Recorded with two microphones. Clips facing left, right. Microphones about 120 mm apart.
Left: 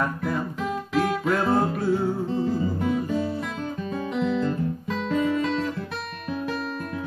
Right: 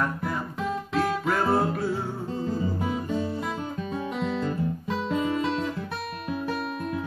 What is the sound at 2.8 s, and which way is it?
Music, 20° right (ahead or behind).